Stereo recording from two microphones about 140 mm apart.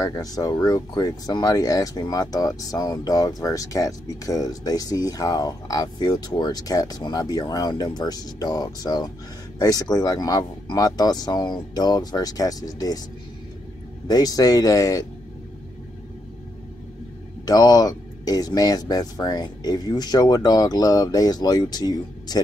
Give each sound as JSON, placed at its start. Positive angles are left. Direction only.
{"t": 0.0, "sound": "speech", "side_deg": 25}
{"t": 14.0, "sound": "speech", "side_deg": 25}
{"t": 17.5, "sound": "speech", "side_deg": 30}